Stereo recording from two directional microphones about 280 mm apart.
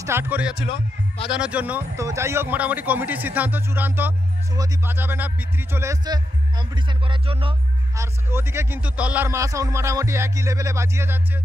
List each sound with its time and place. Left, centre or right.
0.0 s speech: centre
0.7 s speech: centre
1.3 s speech: centre